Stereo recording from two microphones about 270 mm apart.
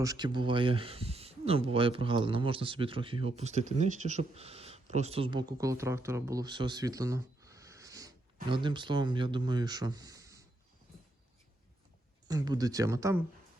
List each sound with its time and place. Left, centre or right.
0.0 s speech: centre
12.3 s speech: centre